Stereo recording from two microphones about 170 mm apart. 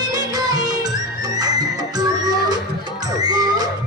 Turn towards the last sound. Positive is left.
turn(degrees=-25)  # may be behind; listen again after turning